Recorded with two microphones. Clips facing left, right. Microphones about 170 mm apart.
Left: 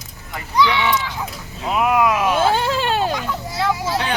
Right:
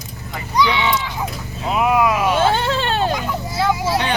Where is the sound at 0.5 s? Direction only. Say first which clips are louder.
Even; 15° right (ahead or behind).